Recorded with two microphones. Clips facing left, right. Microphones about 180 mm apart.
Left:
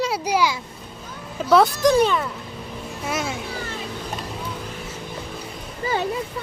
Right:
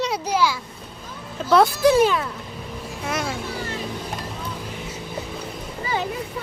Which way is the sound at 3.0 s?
5° left (ahead or behind).